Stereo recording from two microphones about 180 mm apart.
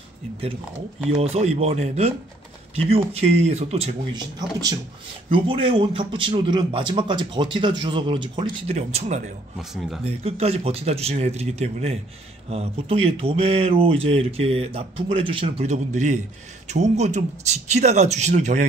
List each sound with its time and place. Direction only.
1.1 s speech: 35° right (ahead or behind)
4.4 s a man's voice: 20° right (ahead or behind); by 9.2 s 40° right (ahead or behind)
9.6 s speech: centre (ahead or behind)
10.2 s speech: 35° right (ahead or behind)